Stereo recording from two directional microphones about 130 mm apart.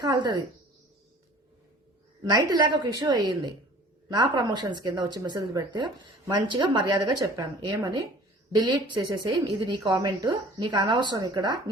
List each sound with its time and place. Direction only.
0.0 s speech: 35° right (ahead or behind)
2.3 s speech: 30° right (ahead or behind)